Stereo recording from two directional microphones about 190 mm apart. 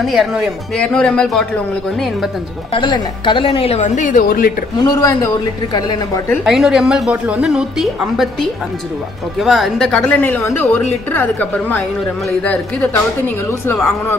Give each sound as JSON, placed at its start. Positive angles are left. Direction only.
{"t": 0.0, "sound": "a woman's voice", "side_deg": 0}
{"t": 2.7, "sound": "a woman's voice", "side_deg": 25}
{"t": 4.7, "sound": "speech", "side_deg": 20}
{"t": 6.4, "sound": "a woman's voice", "side_deg": 0}
{"t": 9.4, "sound": "speech", "side_deg": 0}